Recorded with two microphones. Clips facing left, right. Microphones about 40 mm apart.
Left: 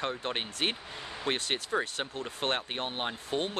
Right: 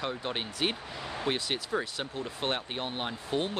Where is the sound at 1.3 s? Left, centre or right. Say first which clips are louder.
Even; left.